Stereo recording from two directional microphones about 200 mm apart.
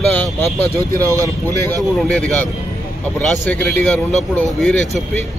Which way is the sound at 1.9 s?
5° left (ahead or behind).